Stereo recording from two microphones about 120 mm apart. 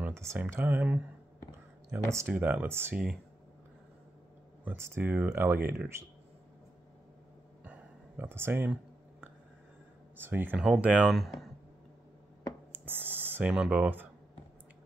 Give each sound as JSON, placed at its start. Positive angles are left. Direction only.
{"t": 0.0, "sound": "speech", "side_deg": -20}
{"t": 4.6, "sound": "speech", "side_deg": -20}
{"t": 7.6, "sound": "a sound", "side_deg": -15}
{"t": 10.1, "sound": "speech", "side_deg": -15}
{"t": 12.7, "sound": "speech", "side_deg": -15}